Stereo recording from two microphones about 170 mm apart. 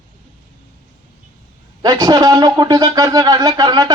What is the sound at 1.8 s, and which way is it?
Speech, 25° right (ahead or behind).